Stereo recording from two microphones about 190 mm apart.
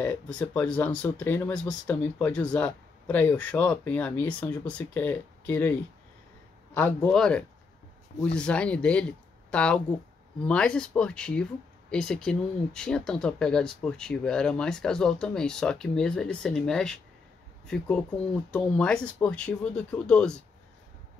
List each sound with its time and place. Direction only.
0.0 s speech: 10° left (ahead or behind)